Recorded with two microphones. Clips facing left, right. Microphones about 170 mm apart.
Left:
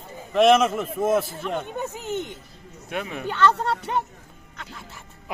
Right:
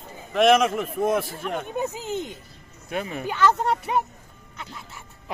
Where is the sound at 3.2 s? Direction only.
10° right (ahead or behind).